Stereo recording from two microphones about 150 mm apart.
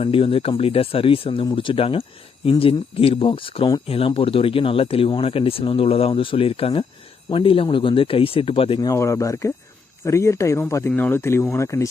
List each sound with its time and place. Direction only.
0.0 s speech: 35° left (ahead or behind)
8.9 s speech: 20° left (ahead or behind)